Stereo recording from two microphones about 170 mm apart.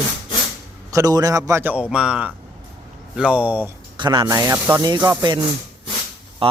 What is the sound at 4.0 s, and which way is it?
Speech, 25° right (ahead or behind).